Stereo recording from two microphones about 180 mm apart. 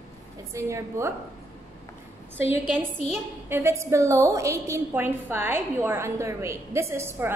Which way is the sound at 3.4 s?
15° right (ahead or behind).